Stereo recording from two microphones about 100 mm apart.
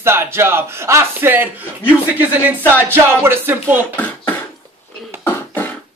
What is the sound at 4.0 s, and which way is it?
Beatboxing, 20° left (ahead or behind).